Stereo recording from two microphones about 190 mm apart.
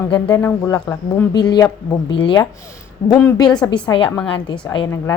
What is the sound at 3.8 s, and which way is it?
Speech, 25° left (ahead or behind).